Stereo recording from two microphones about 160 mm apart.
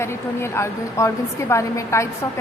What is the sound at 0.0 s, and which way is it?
A woman's voice, 15° left (ahead or behind).